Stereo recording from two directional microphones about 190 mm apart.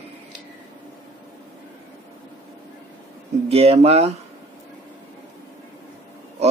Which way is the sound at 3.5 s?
30° right (ahead or behind).